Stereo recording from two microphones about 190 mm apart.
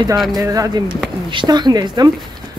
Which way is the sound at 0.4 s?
20° right (ahead or behind).